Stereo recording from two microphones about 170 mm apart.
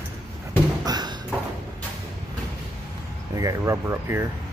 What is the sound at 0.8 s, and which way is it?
Tap, 25° right (ahead or behind).